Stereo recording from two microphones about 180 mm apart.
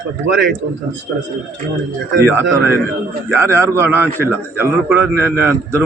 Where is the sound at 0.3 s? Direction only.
70° right (ahead or behind).